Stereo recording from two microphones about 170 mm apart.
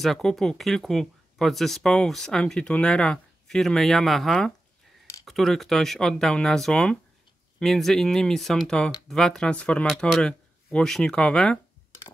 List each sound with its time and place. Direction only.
0.0 s speech: centre (ahead or behind)